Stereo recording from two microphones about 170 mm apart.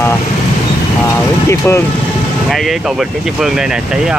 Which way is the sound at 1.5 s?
15° left (ahead or behind).